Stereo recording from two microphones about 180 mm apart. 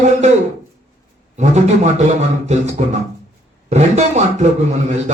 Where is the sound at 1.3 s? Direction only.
40° right (ahead or behind).